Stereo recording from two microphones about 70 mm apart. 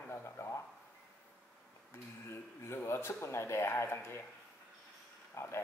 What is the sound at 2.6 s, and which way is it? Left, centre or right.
Speech, left.